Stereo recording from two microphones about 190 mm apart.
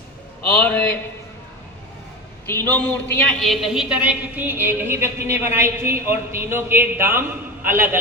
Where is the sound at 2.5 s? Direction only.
10° left (ahead or behind).